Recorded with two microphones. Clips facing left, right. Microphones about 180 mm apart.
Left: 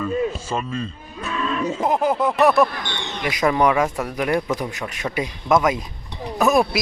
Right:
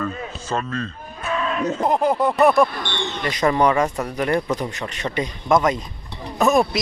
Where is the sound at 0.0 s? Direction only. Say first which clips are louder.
Left 6 dB; 10° left (ahead or behind).